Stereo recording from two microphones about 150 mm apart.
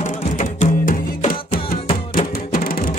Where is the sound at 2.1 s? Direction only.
70° left (ahead or behind).